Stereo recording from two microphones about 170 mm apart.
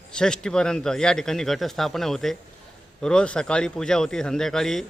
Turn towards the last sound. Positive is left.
turn(degrees=0)  # may be behind; listen again after turning